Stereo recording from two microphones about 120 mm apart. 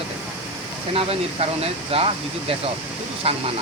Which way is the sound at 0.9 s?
50° right (ahead or behind).